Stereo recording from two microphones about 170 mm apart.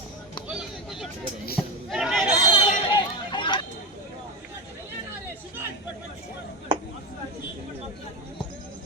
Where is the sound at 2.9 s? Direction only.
30° left (ahead or behind).